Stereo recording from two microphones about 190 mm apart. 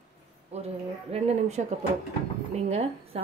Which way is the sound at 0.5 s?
35° right (ahead or behind).